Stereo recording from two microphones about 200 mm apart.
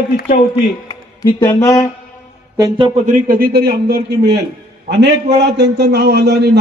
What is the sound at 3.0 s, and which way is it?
A man's voice, 40° right (ahead or behind).